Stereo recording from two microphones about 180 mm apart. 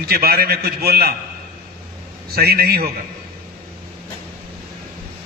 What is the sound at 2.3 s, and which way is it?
Speech, 60° right (ahead or behind).